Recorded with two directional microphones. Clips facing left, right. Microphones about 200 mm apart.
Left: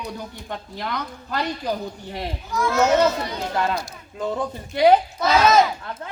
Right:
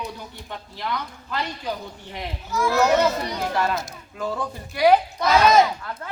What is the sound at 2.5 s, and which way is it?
Speech, 5° right (ahead or behind).